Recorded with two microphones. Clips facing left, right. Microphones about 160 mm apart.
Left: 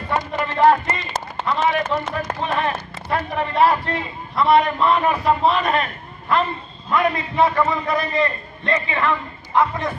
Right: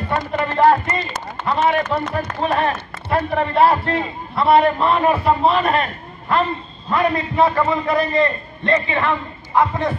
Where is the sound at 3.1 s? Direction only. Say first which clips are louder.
Right 4 dB; 35° right (ahead or behind).